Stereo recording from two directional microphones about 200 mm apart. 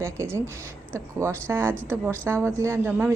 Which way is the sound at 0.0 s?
15° right (ahead or behind).